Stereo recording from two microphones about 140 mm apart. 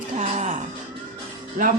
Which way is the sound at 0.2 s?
55° right (ahead or behind).